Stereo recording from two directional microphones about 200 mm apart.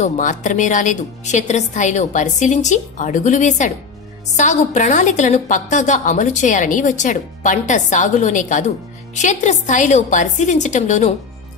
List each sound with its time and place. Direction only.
0.0 s a woman's voice: 40° left (ahead or behind)